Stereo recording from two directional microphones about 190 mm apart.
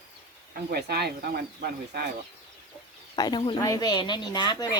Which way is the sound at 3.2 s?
20° left (ahead or behind).